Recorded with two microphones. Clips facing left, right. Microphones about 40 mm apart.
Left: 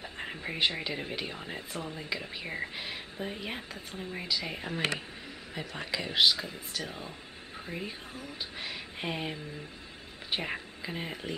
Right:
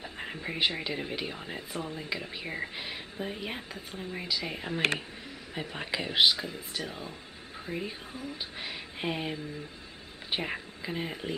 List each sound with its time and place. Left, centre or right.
0.0 s speech: centre
5.5 s speech: centre
6.3 s speech: centre